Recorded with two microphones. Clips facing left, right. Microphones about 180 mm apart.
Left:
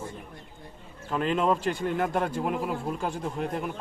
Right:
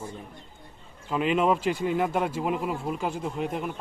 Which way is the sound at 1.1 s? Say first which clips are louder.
Right 2 dB; 5° right (ahead or behind).